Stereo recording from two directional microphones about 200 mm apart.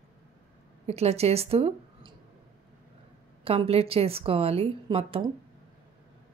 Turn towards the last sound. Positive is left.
turn(degrees=-25)  # may be behind; listen again after turning